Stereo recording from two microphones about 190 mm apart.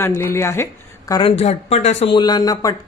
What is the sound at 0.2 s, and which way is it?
A woman's voice, 10° left (ahead or behind).